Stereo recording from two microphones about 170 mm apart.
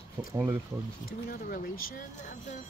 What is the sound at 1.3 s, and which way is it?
Speech, 55° left (ahead or behind).